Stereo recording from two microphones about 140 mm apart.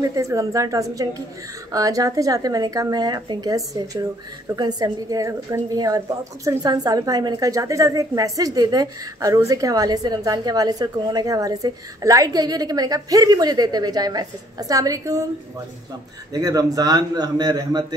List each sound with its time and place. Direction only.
0.0 s a woman's voice: 25° right (ahead or behind)
16.3 s a woman's voice: 25° right (ahead or behind)